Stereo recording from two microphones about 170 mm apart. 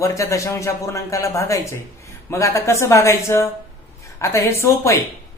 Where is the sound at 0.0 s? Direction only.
20° left (ahead or behind).